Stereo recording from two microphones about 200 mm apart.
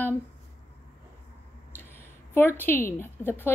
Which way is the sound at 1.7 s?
10° left (ahead or behind).